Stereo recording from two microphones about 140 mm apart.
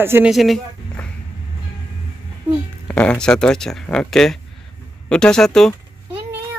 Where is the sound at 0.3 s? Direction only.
Centre (ahead or behind).